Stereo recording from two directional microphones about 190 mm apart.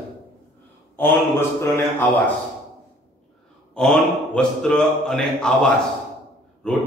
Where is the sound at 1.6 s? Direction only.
10° left (ahead or behind).